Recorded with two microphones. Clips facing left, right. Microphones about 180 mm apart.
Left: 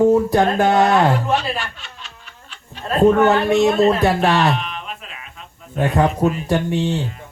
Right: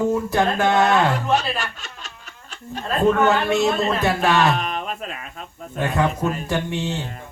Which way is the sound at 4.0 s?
35° left (ahead or behind).